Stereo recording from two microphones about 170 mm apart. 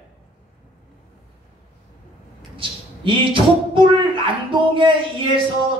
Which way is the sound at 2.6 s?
30° right (ahead or behind).